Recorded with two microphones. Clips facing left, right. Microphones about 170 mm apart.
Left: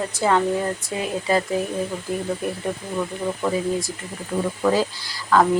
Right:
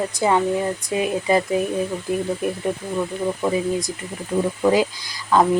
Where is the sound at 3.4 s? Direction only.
15° right (ahead or behind).